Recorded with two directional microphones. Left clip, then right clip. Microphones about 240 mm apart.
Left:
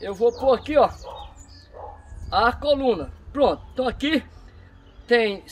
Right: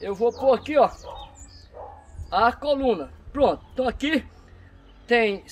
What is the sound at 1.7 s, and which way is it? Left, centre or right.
Bow-wow, right.